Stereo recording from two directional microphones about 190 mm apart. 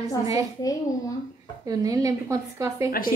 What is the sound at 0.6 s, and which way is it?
Speech, 20° left (ahead or behind).